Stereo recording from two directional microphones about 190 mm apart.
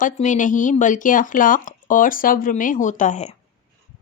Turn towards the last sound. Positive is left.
turn(degrees=40)  # may be behind; listen again after turning